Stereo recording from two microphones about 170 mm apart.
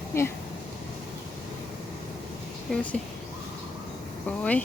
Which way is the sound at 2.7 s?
Centre (ahead or behind).